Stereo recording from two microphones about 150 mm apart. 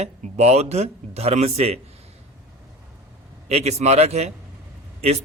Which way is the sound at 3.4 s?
45° right (ahead or behind).